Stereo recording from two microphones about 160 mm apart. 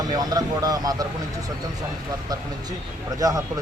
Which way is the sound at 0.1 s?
25° right (ahead or behind).